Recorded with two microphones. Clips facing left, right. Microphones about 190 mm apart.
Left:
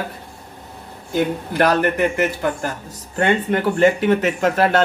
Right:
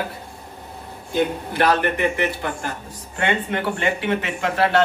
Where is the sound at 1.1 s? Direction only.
45° left (ahead or behind).